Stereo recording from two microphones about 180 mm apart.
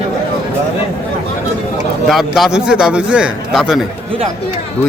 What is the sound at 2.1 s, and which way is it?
A man's voice, centre (ahead or behind).